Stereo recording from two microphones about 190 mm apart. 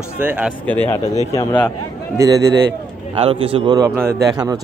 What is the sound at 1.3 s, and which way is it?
Speech, 20° left (ahead or behind).